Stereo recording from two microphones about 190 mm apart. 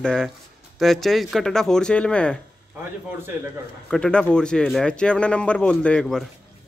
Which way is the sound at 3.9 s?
5° left (ahead or behind).